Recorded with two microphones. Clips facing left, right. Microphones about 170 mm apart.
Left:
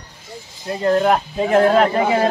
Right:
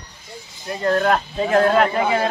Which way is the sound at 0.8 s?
20° left (ahead or behind).